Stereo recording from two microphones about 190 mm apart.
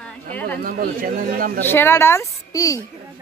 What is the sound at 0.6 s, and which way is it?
Speech, 50° right (ahead or behind).